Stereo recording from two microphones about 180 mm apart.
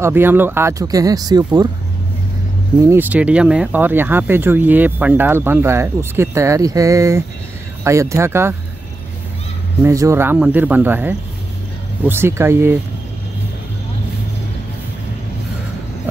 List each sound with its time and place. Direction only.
0.0 s speech: 10° right (ahead or behind)
2.8 s speech: 10° right (ahead or behind)
9.8 s speech: 15° right (ahead or behind)